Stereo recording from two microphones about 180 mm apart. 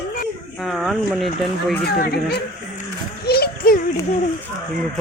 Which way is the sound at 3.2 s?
60° left (ahead or behind).